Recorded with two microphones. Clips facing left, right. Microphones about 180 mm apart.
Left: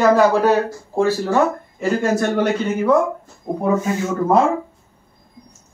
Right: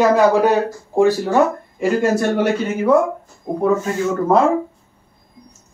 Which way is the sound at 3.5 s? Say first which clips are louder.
Right 1 dB; 5° right (ahead or behind).